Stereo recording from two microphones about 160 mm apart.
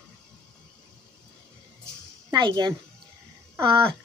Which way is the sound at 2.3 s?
25° right (ahead or behind).